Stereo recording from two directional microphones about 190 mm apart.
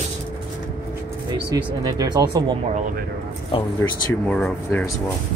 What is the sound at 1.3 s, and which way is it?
Speech, 20° right (ahead or behind).